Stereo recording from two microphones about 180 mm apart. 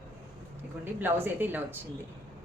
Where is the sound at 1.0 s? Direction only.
10° right (ahead or behind).